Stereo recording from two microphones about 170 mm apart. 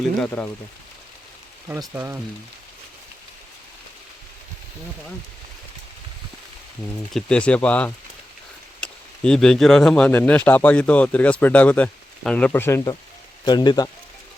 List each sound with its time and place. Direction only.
0.2 s speech: 10° left (ahead or behind)
1.6 s speech: 15° right (ahead or behind)
7.1 s speech: 5° left (ahead or behind); by 13.9 s 25° left (ahead or behind)